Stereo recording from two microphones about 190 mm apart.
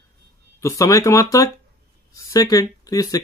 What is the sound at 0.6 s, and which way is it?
Speech, 15° left (ahead or behind).